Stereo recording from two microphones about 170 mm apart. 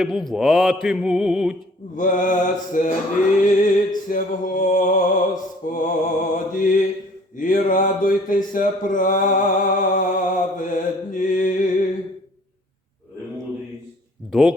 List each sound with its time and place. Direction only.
0.0 s mantra: centre (ahead or behind)
2.0 s mantra: 50° left (ahead or behind)
14.3 s speech: centre (ahead or behind)